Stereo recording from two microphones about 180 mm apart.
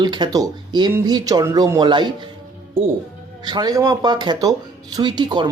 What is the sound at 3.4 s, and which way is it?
Speech, 25° right (ahead or behind).